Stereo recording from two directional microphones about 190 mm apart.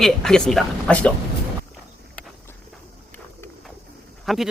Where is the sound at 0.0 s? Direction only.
5° left (ahead or behind).